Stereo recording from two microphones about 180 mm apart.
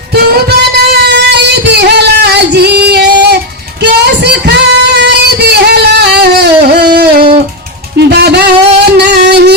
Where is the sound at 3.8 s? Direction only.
70° right (ahead or behind).